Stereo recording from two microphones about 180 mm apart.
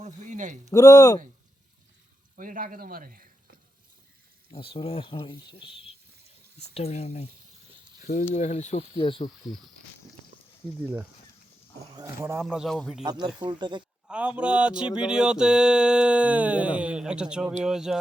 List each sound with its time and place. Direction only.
0.0 s speech: 45° right (ahead or behind)
0.7 s speech: 20° left (ahead or behind)
2.3 s speech: 50° right (ahead or behind)
4.5 s speech: 30° left (ahead or behind)
11.9 s speech: 15° right (ahead or behind)
12.5 s a sound: centre (ahead or behind)
13.1 s speech: 25° right (ahead or behind)
14.1 s a sound: 5° right (ahead or behind)